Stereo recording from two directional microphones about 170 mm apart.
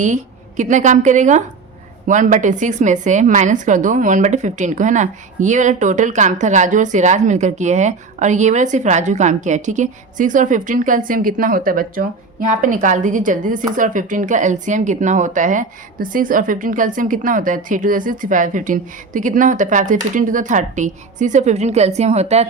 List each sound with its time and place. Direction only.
0.0 s a woman's voice: 45° right (ahead or behind)